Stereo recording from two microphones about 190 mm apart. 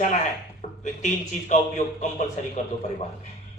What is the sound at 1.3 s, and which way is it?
Speech, 40° left (ahead or behind).